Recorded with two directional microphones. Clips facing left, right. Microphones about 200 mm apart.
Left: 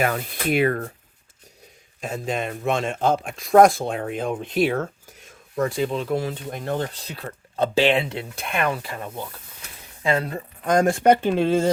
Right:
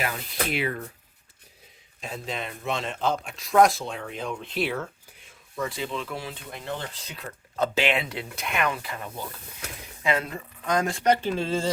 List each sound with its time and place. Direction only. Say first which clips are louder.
0.0 s speech: left 6 dB; 50° left (ahead or behind)
2.0 s speech: left 7 dB; 50° left (ahead or behind)
10.6 s speech: left 7 dB; 50° left (ahead or behind)